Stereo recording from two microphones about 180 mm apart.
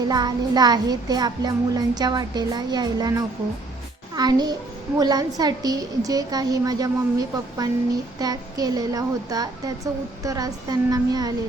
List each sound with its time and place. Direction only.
0.1 s child singing: 20° right (ahead or behind)
4.1 s a child's voice: 20° right (ahead or behind)
4.9 s child singing: 20° right (ahead or behind)